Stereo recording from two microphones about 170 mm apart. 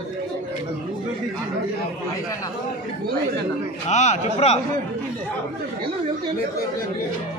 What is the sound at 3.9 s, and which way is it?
Speech, 40° left (ahead or behind).